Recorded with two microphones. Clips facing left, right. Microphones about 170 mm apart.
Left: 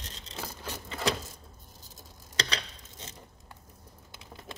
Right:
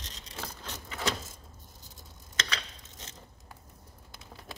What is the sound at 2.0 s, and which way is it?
Tick-tock, 35° left (ahead or behind).